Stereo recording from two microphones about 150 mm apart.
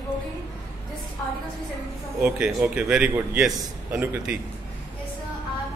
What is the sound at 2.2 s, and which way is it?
A man's voice, 10° right (ahead or behind).